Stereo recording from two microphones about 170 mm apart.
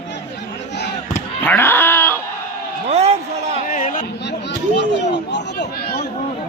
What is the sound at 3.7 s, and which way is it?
Chatter, 50° left (ahead or behind).